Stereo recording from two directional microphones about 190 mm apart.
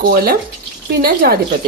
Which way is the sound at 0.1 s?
50° right (ahead or behind).